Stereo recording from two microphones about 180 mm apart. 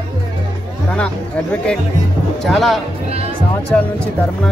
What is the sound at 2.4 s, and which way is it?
Speech, centre (ahead or behind).